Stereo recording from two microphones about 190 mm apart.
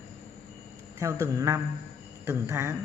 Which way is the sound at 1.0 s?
15° right (ahead or behind).